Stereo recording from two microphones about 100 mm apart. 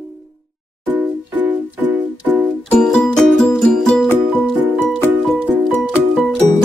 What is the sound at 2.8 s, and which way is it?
Music, 5° left (ahead or behind).